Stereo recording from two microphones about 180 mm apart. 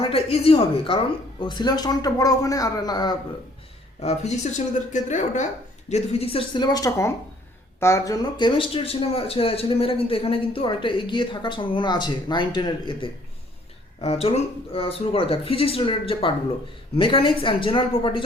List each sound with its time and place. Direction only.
0.0 s speech: 30° left (ahead or behind)
4.0 s speech: 40° left (ahead or behind)
5.9 s speech: 35° left (ahead or behind)